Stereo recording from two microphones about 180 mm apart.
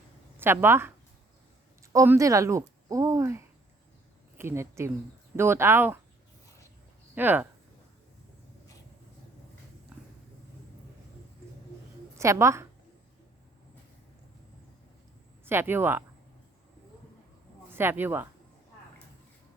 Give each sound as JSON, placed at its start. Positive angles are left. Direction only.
{"t": 0.3, "sound": "speech", "side_deg": -10}
{"t": 7.2, "sound": "speech", "side_deg": -10}
{"t": 12.1, "sound": "a woman's voice", "side_deg": -15}
{"t": 15.4, "sound": "speech", "side_deg": -10}
{"t": 17.7, "sound": "speech", "side_deg": -10}